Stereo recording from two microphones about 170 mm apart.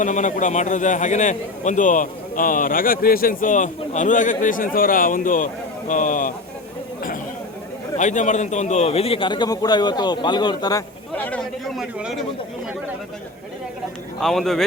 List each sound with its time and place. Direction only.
0.0 s a man's voice: 45° left (ahead or behind)
7.9 s a man's voice: 45° left (ahead or behind); by 10.8 s 25° left (ahead or behind)
11.1 s a man's voice: 10° left (ahead or behind)
14.2 s a man's voice: centre (ahead or behind)